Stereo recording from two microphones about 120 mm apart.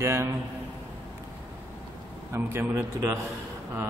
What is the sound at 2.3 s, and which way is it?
Speech, 20° right (ahead or behind).